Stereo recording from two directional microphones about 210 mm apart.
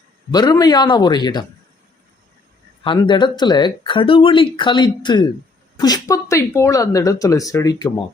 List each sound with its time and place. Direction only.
0.3 s speech: 20° left (ahead or behind)
2.8 s speech: 25° left (ahead or behind)